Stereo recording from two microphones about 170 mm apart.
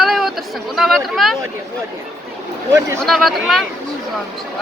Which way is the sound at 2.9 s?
Centre (ahead or behind).